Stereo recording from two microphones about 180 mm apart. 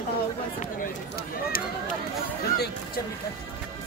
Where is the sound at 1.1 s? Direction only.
55° left (ahead or behind).